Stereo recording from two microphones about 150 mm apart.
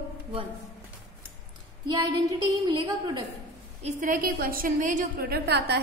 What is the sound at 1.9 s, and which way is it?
Speech, 30° right (ahead or behind).